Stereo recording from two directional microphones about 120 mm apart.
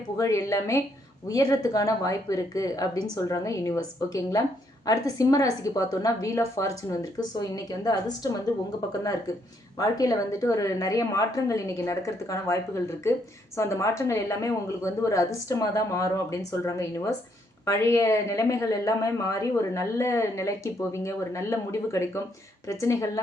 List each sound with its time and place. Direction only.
0.2 s a woman's voice: 25° left (ahead or behind)
9.7 s a woman's voice: 30° left (ahead or behind)